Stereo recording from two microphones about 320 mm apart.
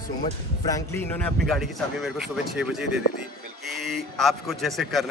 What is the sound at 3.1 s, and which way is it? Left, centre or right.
Speech, left.